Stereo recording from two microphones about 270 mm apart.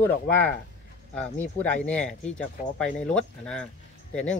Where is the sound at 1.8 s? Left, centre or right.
Centre.